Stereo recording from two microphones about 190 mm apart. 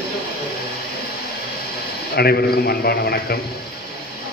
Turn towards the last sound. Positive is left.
turn(degrees=55)  # may be behind; listen again after turning